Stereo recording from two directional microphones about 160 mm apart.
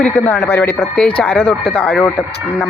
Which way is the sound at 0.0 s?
10° left (ahead or behind).